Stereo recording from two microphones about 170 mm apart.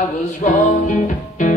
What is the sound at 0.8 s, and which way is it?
Music, 50° left (ahead or behind).